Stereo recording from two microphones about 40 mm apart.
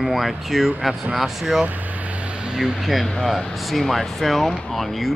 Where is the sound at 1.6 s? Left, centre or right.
Right.